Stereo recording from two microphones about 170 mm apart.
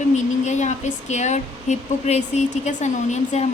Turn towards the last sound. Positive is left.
turn(degrees=45)  # may be behind; listen again after turning